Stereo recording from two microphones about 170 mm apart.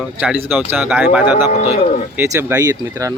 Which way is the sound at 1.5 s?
45° left (ahead or behind).